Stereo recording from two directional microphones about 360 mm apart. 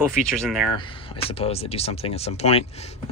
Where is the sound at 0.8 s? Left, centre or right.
Centre.